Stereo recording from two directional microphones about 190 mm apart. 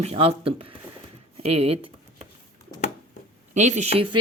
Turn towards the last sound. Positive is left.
turn(degrees=-25)  # may be behind; listen again after turning